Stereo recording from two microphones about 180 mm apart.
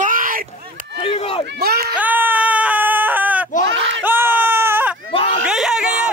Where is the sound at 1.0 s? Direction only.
30° left (ahead or behind).